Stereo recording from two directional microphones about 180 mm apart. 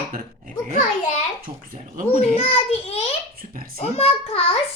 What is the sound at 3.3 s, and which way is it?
Speech, 55° right (ahead or behind).